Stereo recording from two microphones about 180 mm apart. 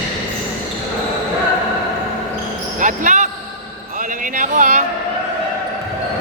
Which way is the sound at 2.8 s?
45° right (ahead or behind).